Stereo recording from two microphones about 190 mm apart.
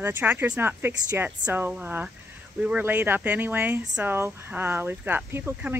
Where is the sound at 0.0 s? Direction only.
10° right (ahead or behind).